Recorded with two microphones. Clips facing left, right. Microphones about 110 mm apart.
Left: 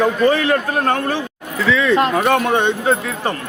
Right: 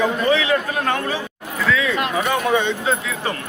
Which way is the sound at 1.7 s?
70° left (ahead or behind).